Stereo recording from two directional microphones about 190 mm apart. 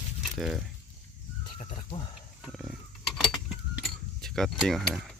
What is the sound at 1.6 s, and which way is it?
Speech, 40° left (ahead or behind).